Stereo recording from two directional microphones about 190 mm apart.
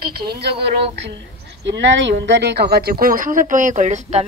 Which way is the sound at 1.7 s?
70° right (ahead or behind).